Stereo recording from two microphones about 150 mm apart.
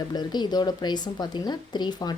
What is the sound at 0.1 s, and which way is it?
A woman's voice, 30° left (ahead or behind).